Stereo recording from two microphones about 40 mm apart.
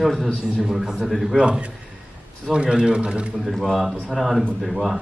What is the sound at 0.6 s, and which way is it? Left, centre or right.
Speech, centre.